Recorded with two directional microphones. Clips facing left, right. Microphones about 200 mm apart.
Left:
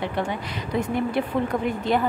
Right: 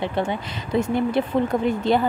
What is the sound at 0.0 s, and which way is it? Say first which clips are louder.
Speech: right 3 dB; 25° right (ahead or behind).